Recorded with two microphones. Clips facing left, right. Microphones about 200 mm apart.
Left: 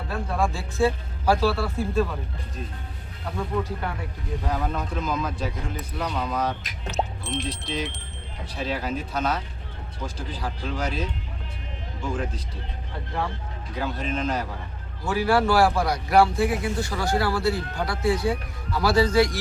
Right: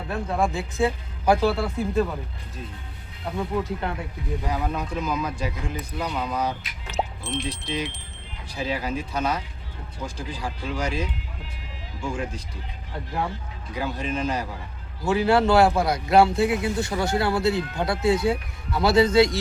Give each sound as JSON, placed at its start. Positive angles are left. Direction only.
{"t": 0.1, "sound": "speech", "side_deg": -20}
{"t": 4.4, "sound": "speech", "side_deg": -10}
{"t": 6.9, "sound": "speech", "side_deg": 0}
{"t": 13.7, "sound": "speech", "side_deg": -10}
{"t": 15.0, "sound": "speech", "side_deg": -25}